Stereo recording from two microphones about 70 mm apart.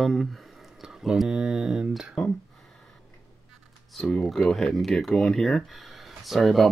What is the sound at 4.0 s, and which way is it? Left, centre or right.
Speech, centre.